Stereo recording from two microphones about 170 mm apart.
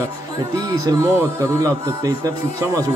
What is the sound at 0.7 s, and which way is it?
A man's voice, 20° right (ahead or behind).